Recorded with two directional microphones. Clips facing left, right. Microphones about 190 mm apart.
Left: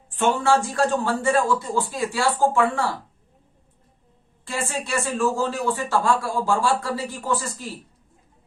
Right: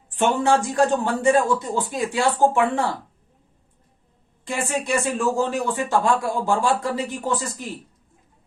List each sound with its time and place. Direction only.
0.1 s speech: 15° right (ahead or behind)
4.4 s speech: 15° right (ahead or behind)